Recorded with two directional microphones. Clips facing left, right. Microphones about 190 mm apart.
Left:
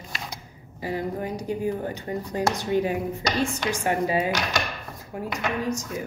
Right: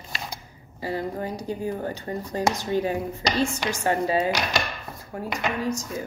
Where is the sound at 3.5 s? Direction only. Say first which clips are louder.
Left 1 dB; 35° right (ahead or behind).